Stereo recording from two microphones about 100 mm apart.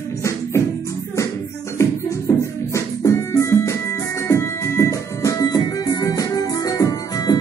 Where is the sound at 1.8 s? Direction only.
30° left (ahead or behind).